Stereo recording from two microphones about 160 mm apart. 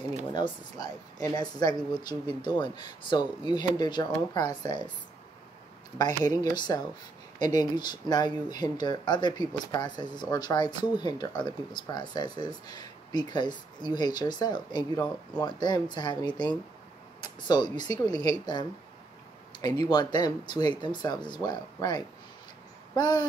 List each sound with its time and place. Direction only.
0.3 s speech: 25° left (ahead or behind)
5.9 s speech: 25° left (ahead or behind)